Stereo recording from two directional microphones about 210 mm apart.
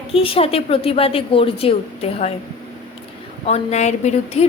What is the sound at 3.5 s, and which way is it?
A woman's voice, 30° left (ahead or behind).